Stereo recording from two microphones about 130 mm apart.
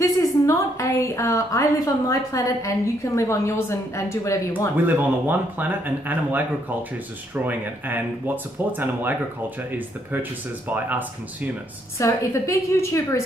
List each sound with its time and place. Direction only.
0.0 s a woman's voice: 25° left (ahead or behind)
4.8 s speech: 15° right (ahead or behind)
7.4 s speech: 15° right (ahead or behind)
12.0 s a woman's voice: 25° left (ahead or behind)